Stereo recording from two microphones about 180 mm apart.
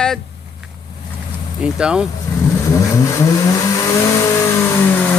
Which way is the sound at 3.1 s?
20° left (ahead or behind).